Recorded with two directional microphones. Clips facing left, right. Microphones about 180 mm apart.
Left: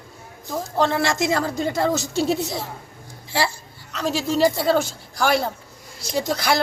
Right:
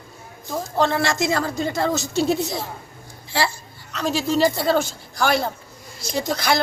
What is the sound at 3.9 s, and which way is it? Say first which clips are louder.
A woman's voice: right 1 dB; 5° left (ahead or behind).